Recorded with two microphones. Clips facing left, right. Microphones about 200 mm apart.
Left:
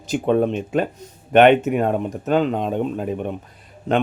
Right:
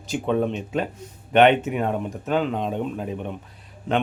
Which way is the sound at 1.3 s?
45° left (ahead or behind).